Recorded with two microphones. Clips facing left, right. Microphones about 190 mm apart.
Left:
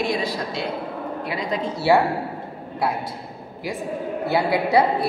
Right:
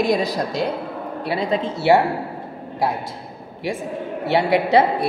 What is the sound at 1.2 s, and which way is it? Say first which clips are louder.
Speech: right 6 dB; 30° right (ahead or behind).